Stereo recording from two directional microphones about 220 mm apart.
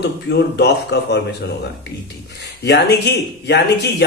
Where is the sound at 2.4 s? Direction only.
50° left (ahead or behind).